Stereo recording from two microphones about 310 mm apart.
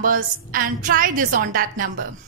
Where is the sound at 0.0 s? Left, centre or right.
Right.